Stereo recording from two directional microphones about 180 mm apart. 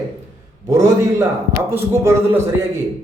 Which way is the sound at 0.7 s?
15° right (ahead or behind).